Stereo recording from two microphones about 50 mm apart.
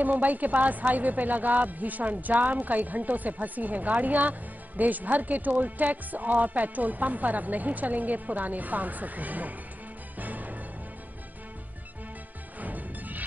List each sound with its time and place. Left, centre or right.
0.0 s a woman's voice: right
10.1 s music: right
12.5 s music: right